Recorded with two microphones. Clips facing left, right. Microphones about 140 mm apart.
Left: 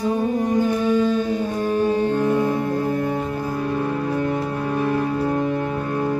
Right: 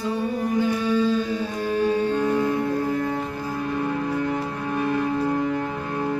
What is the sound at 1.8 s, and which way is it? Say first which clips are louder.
Music: left 1 dB; 45° left (ahead or behind).